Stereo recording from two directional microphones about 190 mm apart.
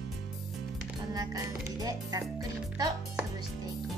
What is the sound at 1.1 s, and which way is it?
Speech, 20° right (ahead or behind).